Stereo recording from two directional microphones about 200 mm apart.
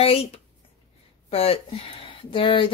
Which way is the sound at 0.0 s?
30° left (ahead or behind).